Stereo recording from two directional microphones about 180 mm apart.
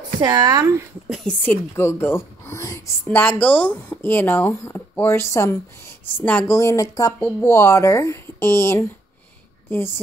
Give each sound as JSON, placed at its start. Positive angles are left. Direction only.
{"t": 0.2, "sound": "speech", "side_deg": -20}
{"t": 1.0, "sound": "speech", "side_deg": -5}
{"t": 1.4, "sound": "speech", "side_deg": 10}